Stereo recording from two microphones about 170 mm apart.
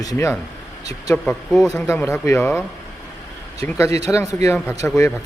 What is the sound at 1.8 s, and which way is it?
Speech, 15° left (ahead or behind).